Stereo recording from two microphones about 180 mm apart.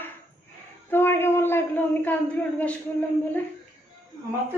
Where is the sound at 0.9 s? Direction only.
15° left (ahead or behind).